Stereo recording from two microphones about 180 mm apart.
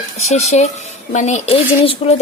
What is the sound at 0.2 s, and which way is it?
Speech, 40° left (ahead or behind).